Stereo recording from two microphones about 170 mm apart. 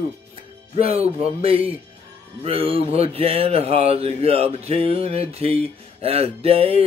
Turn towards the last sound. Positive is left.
turn(degrees=-35)  # may be behind; listen again after turning